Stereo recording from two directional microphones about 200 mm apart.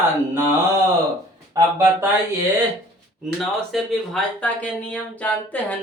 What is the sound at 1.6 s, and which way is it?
Speech, 15° right (ahead or behind).